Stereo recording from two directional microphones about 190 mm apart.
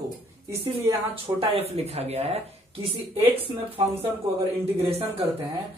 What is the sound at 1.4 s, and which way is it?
Speech, 30° right (ahead or behind).